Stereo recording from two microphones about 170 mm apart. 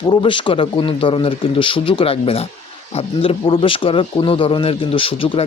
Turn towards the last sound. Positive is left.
turn(degrees=35)  # may be behind; listen again after turning